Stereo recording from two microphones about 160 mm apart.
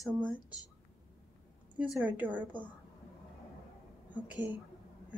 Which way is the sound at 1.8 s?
10° right (ahead or behind).